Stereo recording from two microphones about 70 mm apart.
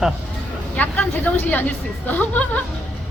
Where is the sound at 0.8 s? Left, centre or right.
Left.